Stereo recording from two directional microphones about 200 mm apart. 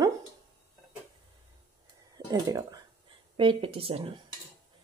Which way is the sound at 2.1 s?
20° right (ahead or behind).